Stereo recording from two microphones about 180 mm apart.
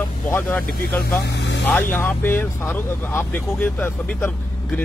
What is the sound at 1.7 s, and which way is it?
Speech, 10° left (ahead or behind).